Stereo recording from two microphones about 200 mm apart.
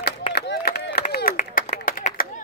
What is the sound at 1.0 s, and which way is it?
Clapping, 45° left (ahead or behind).